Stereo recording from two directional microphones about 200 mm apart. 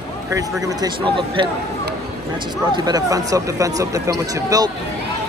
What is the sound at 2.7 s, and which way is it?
Speech, 20° right (ahead or behind).